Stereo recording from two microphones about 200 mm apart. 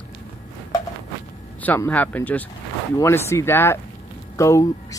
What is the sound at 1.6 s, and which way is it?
Speech, 10° left (ahead or behind).